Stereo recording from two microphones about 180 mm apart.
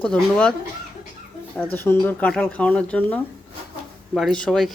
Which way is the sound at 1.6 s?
10° left (ahead or behind).